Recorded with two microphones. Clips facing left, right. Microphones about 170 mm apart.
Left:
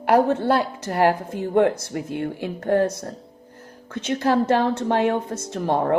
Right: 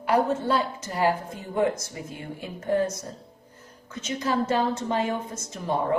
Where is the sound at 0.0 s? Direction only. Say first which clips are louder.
Left 5 dB; 65° left (ahead or behind).